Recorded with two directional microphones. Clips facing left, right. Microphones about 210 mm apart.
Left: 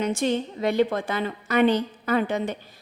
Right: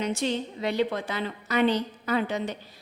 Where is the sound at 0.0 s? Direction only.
50° left (ahead or behind).